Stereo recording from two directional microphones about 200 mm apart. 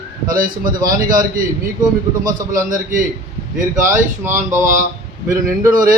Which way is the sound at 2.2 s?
40° right (ahead or behind).